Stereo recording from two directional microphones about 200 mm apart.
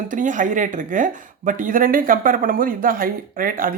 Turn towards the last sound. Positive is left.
turn(degrees=-45)  # may be behind; listen again after turning